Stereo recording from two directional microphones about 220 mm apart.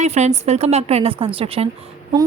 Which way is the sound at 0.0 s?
30° right (ahead or behind).